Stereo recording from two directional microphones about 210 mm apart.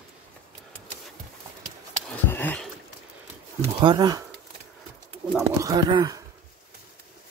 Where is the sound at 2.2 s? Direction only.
10° left (ahead or behind).